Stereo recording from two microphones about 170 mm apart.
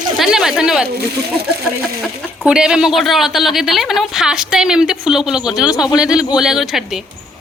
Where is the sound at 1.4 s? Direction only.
75° right (ahead or behind).